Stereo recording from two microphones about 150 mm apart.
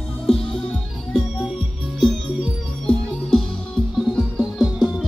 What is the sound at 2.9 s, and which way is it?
Music, 5° left (ahead or behind).